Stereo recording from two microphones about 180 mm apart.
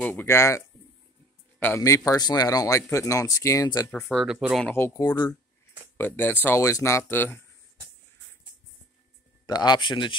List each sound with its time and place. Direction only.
0.0 s speech: 10° left (ahead or behind)
3.9 s speech: 5° left (ahead or behind)
4.6 s speech: 15° left (ahead or behind)
9.5 s speech: 25° left (ahead or behind)